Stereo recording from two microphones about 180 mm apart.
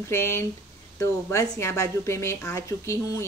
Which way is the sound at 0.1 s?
15° left (ahead or behind).